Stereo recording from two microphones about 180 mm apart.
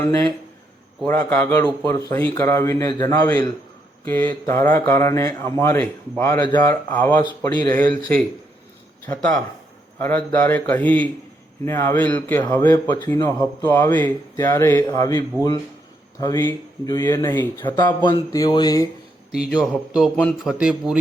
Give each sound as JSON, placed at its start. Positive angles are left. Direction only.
{"t": 0.0, "sound": "speech", "side_deg": 15}
{"t": 4.0, "sound": "speech", "side_deg": 10}
{"t": 7.3, "sound": "a sound", "side_deg": 25}
{"t": 7.8, "sound": "speech", "side_deg": 5}
{"t": 13.1, "sound": "a sound", "side_deg": 25}
{"t": 13.7, "sound": "speech", "side_deg": 10}
{"t": 16.2, "sound": "speech", "side_deg": 15}
{"t": 18.0, "sound": "a sound", "side_deg": 20}
{"t": 19.3, "sound": "a man's voice", "side_deg": -5}
{"t": 20.5, "sound": "a man's voice", "side_deg": -5}